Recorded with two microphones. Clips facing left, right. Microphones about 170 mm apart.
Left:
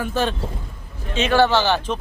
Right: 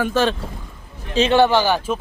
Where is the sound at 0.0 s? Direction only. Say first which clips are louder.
Right 4 dB; 90° right.